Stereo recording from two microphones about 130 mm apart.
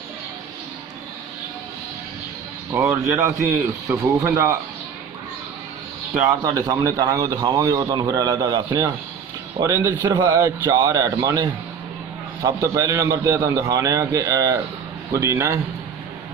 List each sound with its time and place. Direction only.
2.7 s a man's voice: 20° right (ahead or behind)
6.4 s a man's voice: 25° right (ahead or behind)